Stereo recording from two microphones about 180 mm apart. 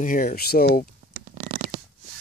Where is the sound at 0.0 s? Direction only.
50° left (ahead or behind).